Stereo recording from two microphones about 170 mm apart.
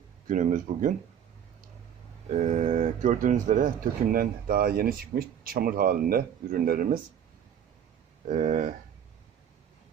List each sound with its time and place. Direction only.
0.3 s speech: 50° right (ahead or behind)
2.3 s speech: 45° right (ahead or behind)
8.3 s speech: 50° right (ahead or behind)